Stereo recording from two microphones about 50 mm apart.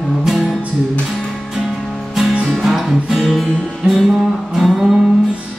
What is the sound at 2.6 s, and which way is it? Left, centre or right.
Music, centre.